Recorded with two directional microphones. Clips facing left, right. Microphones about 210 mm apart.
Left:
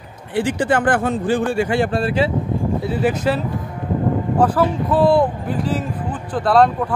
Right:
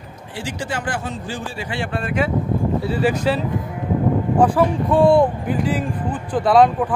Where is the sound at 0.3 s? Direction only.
55° left (ahead or behind); by 2.3 s 30° left (ahead or behind).